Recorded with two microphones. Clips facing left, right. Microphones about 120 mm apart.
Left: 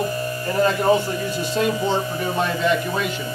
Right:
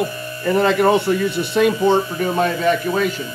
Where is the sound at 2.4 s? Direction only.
45° right (ahead or behind).